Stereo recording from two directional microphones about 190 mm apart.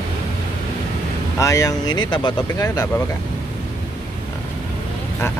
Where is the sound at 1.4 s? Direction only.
15° left (ahead or behind).